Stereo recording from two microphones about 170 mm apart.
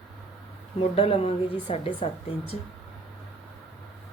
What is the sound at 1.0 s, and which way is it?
A woman's voice, 35° left (ahead or behind).